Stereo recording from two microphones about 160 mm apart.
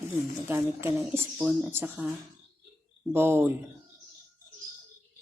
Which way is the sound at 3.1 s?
15° right (ahead or behind).